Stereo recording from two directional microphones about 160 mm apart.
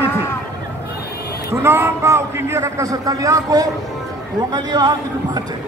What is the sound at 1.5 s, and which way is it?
A man's voice, 15° right (ahead or behind).